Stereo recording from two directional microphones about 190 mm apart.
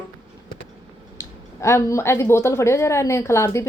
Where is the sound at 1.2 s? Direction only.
15° left (ahead or behind).